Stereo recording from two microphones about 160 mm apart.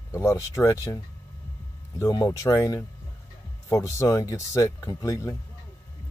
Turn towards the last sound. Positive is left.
turn(degrees=20)  # may be behind; listen again after turning